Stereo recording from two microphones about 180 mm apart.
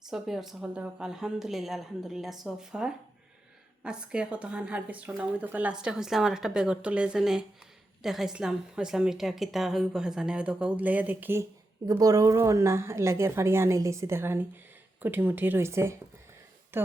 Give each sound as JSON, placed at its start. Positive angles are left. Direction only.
{"t": 0.1, "sound": "a woman's voice", "side_deg": 0}